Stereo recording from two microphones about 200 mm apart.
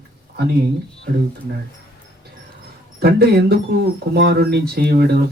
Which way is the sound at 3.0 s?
50° right (ahead or behind).